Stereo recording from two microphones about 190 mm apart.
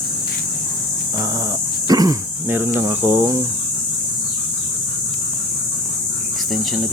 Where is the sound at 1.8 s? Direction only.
20° right (ahead or behind).